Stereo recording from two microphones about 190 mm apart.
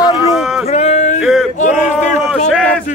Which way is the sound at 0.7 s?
35° left (ahead or behind).